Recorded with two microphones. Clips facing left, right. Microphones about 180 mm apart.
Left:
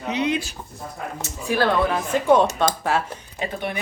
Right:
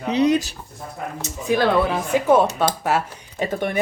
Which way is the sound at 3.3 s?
50° right (ahead or behind).